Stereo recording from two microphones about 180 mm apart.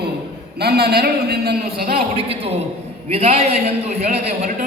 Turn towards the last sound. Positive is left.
turn(degrees=-40)  # may be behind; listen again after turning